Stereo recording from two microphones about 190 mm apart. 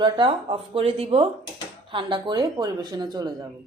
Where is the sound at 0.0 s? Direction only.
25° right (ahead or behind).